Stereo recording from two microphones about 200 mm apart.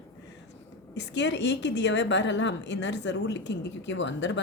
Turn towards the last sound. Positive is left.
turn(degrees=65)  # may be behind; listen again after turning